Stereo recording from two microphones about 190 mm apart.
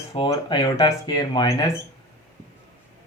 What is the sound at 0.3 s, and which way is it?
Speech, 25° left (ahead or behind).